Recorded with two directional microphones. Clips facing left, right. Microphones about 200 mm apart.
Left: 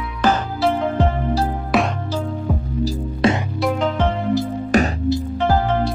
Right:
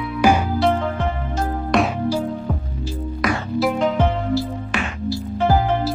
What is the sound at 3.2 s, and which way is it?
Music, 30° left (ahead or behind).